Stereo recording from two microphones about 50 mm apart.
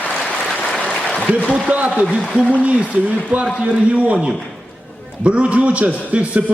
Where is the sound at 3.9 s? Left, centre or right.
Right.